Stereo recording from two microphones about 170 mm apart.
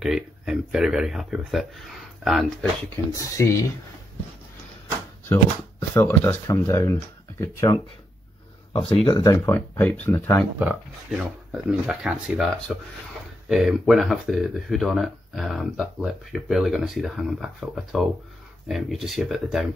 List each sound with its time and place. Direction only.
0.0 s speech: 5° right (ahead or behind)
3.4 s speech: 15° left (ahead or behind)
5.3 s speech: 15° left (ahead or behind)
8.7 s speech: 30° left (ahead or behind)
9.8 s speech: 10° left (ahead or behind)
10.6 s speech: 10° right (ahead or behind)